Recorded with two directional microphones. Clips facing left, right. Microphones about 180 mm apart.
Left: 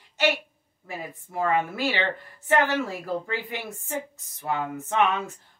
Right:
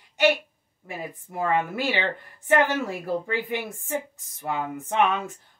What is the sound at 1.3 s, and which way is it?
Speech, 15° right (ahead or behind).